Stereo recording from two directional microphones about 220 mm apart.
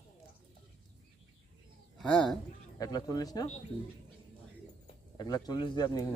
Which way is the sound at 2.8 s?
15° left (ahead or behind).